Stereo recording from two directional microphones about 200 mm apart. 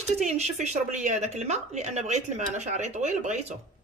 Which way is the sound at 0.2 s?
35° right (ahead or behind).